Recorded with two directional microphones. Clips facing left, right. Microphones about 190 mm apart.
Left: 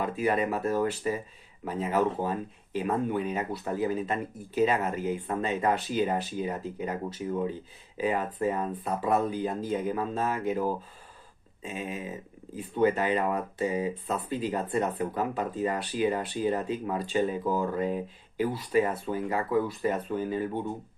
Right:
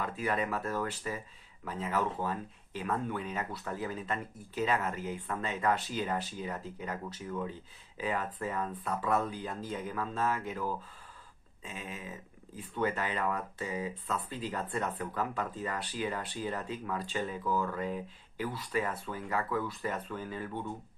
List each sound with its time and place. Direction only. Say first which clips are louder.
0.0 s speech: left 6 dB; 15° left (ahead or behind)